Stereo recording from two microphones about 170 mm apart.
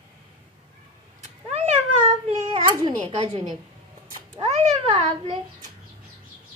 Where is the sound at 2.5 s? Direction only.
30° right (ahead or behind).